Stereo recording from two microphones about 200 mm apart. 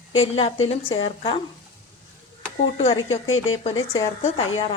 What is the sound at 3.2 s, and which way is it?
Speech, 90° left.